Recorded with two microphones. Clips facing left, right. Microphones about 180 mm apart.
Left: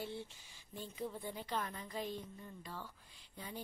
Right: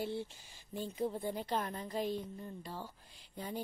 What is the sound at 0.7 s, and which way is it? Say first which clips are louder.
A woman's voice: right 7 dB; 35° right (ahead or behind).